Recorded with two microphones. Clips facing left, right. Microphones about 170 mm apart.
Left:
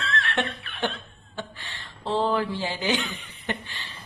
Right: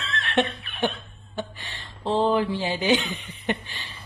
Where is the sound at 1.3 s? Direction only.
15° right (ahead or behind).